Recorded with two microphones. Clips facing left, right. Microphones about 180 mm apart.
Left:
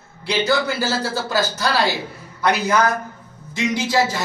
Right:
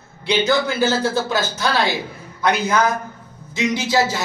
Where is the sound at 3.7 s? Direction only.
Centre (ahead or behind).